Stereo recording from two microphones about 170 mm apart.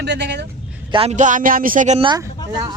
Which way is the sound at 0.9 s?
40° right (ahead or behind).